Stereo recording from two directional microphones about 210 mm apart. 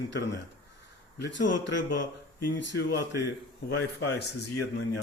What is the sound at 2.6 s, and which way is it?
Speech, 55° left (ahead or behind).